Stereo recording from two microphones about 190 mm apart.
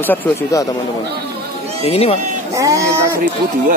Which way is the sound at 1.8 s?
30° left (ahead or behind).